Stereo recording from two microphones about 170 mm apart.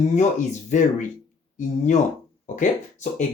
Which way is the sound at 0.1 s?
45° left (ahead or behind).